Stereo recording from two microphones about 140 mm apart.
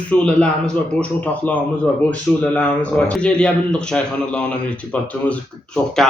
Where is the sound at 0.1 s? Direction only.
5° left (ahead or behind).